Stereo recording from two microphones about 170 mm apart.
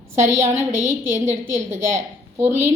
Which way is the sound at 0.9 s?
15° right (ahead or behind).